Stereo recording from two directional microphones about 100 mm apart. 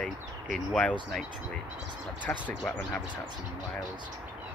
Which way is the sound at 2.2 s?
15° left (ahead or behind).